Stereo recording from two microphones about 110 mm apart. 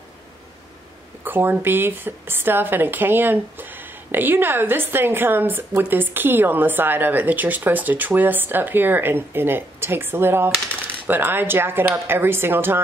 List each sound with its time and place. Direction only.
1.2 s a woman's voice: 20° right (ahead or behind)